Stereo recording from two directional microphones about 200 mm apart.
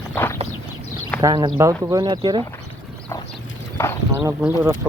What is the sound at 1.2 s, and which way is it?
Speech, 15° right (ahead or behind).